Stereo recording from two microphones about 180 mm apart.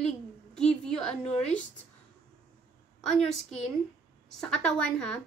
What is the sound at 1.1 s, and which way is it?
Speech, 35° left (ahead or behind).